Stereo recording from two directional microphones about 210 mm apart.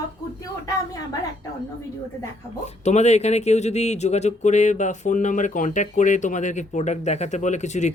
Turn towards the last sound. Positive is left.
turn(degrees=35)  # may be behind; listen again after turning